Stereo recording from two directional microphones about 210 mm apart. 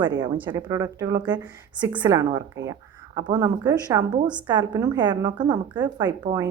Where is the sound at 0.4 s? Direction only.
15° right (ahead or behind).